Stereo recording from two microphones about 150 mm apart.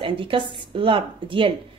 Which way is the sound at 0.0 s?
35° right (ahead or behind).